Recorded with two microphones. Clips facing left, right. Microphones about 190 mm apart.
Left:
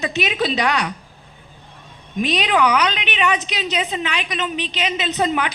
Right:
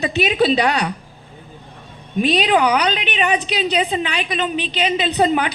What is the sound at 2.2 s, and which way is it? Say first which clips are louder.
Speech: right 3 dB; 35° right (ahead or behind).